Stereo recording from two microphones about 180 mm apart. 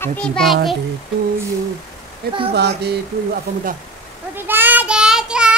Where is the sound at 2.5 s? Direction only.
65° right (ahead or behind).